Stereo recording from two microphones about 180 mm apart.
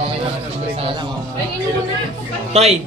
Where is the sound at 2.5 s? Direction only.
35° right (ahead or behind).